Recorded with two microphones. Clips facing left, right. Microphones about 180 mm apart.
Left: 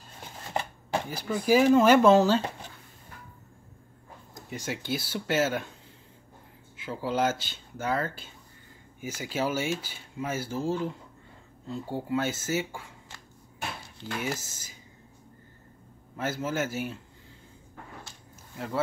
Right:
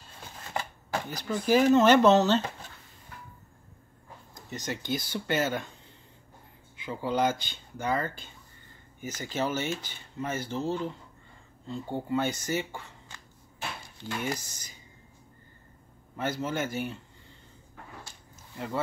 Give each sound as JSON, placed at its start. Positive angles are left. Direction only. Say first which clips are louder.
{"t": 0.5, "sound": "shuffling cards", "louder": "left 3 dB", "side_deg": 25}
{"t": 1.0, "sound": "speech", "louder": "left 1 dB", "side_deg": 5}
{"t": 4.5, "sound": "speech", "louder": "even", "side_deg": 10}
{"t": 6.8, "sound": "speech", "louder": "even", "side_deg": 5}
{"t": 14.2, "sound": "speech", "louder": "even", "side_deg": 5}
{"t": 16.2, "sound": "speech", "louder": "left 1 dB", "side_deg": 5}